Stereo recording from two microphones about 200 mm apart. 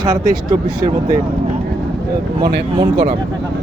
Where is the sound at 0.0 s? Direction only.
15° right (ahead or behind).